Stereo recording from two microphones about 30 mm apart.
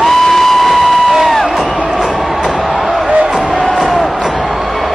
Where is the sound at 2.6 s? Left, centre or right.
Centre.